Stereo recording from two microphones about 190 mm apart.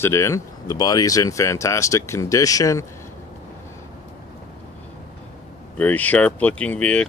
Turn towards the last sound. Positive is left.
turn(degrees=5)  # may be behind; listen again after turning